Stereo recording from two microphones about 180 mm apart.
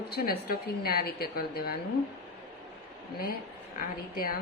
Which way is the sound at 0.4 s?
60° left (ahead or behind).